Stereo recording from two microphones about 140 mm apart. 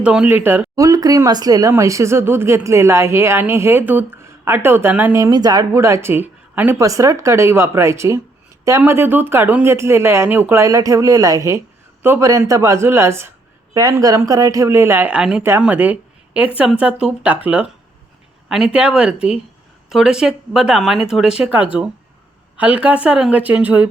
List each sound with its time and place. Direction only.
0.0 s speech: 5° right (ahead or behind)
0.9 s speech: 25° right (ahead or behind); by 23.9 s 10° right (ahead or behind)